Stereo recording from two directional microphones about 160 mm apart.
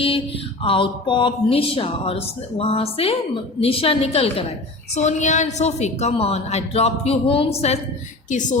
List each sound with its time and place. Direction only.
0.6 s a woman's voice: 35° left (ahead or behind)